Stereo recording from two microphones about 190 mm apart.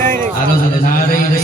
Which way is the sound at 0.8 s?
45° left (ahead or behind).